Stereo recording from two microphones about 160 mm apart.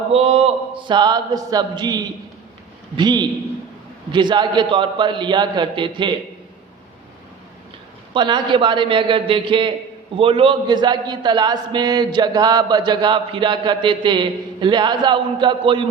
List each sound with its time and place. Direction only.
0.1 s a man's voice: 40° right (ahead or behind)
8.1 s a man's voice: 30° right (ahead or behind)